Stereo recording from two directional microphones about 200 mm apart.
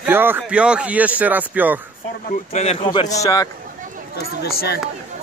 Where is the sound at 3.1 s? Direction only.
15° left (ahead or behind).